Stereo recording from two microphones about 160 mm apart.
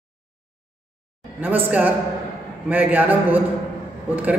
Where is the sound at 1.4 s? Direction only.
10° right (ahead or behind).